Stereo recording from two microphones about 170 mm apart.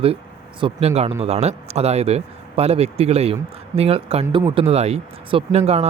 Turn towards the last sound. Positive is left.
turn(degrees=-40)  # may be behind; listen again after turning